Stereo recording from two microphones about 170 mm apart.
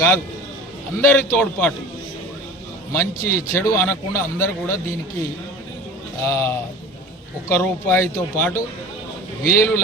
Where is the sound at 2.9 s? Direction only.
15° left (ahead or behind).